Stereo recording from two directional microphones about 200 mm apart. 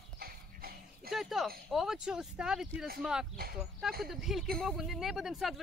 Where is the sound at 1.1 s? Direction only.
Centre (ahead or behind).